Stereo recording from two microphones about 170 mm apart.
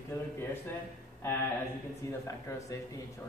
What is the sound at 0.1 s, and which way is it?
A man's voice, 20° left (ahead or behind).